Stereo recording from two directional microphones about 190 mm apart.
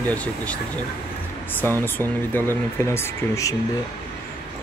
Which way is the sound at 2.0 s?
10° left (ahead or behind).